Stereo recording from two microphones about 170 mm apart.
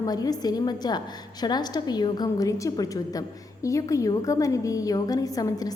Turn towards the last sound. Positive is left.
turn(degrees=20)  # may be behind; listen again after turning